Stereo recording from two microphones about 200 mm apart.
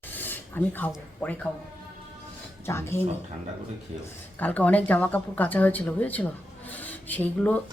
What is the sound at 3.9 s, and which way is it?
Speech, 30° right (ahead or behind).